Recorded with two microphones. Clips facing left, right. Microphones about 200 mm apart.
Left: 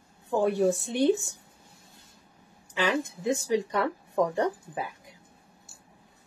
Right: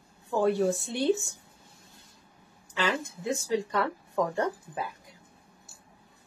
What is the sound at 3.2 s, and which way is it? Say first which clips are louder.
Speech: left 1 dB; 20° left (ahead or behind).